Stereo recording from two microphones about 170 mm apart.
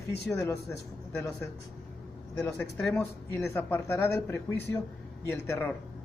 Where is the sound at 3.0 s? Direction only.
15° left (ahead or behind).